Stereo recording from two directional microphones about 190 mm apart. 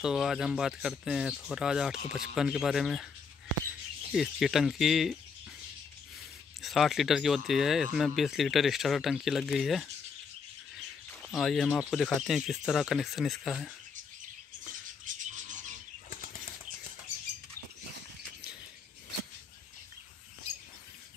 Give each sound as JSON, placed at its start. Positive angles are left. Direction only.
{"t": 0.0, "sound": "speech", "side_deg": 0}
{"t": 4.1, "sound": "speech", "side_deg": 0}
{"t": 6.6, "sound": "speech", "side_deg": 0}
{"t": 11.1, "sound": "speech", "side_deg": 0}
{"t": 15.0, "sound": "a sound", "side_deg": -40}